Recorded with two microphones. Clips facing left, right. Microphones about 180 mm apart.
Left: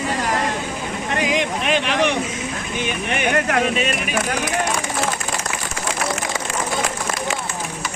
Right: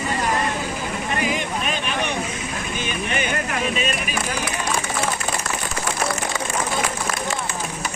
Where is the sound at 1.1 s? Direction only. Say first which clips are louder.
Left 4 dB; 90° left.